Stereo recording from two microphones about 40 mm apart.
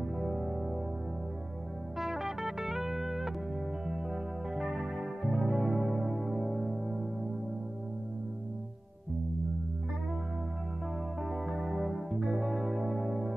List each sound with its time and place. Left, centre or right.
0.0 s music: centre
2.0 s music: centre
11.2 s music: centre